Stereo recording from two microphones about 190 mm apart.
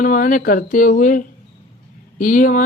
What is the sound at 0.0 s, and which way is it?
Speech, 45° left (ahead or behind).